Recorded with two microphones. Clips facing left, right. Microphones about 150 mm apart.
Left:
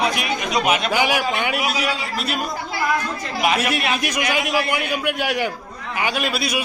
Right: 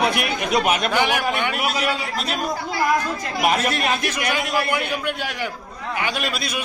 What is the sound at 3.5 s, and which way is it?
A man's voice, 10° left (ahead or behind).